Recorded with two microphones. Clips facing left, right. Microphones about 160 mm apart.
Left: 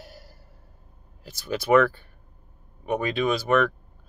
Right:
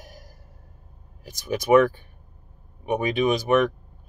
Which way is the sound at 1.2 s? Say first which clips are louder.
Right 2 dB; 15° right (ahead or behind).